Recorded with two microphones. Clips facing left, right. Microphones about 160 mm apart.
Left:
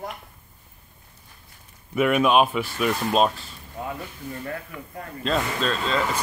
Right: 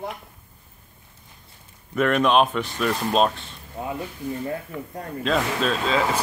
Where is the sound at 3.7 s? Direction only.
20° right (ahead or behind).